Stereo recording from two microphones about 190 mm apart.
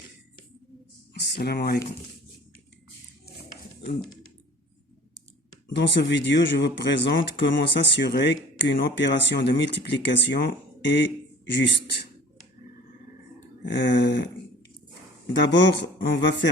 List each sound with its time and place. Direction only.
1.1 s speech: 60° left (ahead or behind)
5.6 s speech: 65° left (ahead or behind)
13.7 s speech: 70° left (ahead or behind)
15.4 s speech: 70° left (ahead or behind)